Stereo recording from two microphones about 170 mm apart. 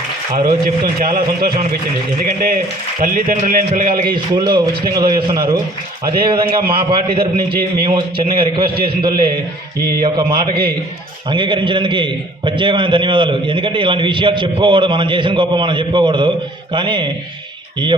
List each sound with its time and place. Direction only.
0.6 s a man's voice: 60° right (ahead or behind)
4.1 s a man's voice: 25° right (ahead or behind)
10.0 s a man's voice: 30° right (ahead or behind)